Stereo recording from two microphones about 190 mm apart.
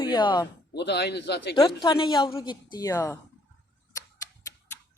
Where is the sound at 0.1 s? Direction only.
25° left (ahead or behind).